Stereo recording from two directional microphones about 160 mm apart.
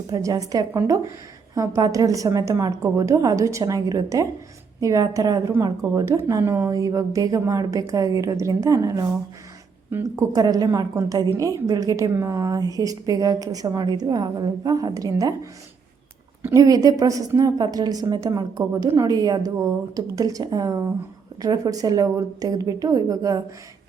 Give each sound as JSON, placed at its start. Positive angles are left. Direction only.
{"t": 0.1, "sound": "a woman's voice", "side_deg": -20}
{"t": 16.4, "sound": "a woman's voice", "side_deg": -15}